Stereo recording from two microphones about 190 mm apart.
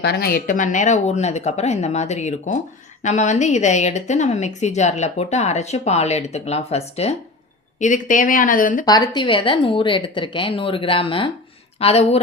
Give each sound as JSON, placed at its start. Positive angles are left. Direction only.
{"t": 0.0, "sound": "a woman's voice", "side_deg": 55}
{"t": 8.8, "sound": "a woman's voice", "side_deg": 20}